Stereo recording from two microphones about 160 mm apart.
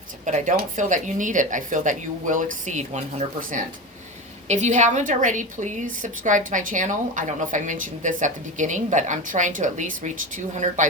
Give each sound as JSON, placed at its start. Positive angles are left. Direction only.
{"t": 0.3, "sound": "a woman's voice", "side_deg": -45}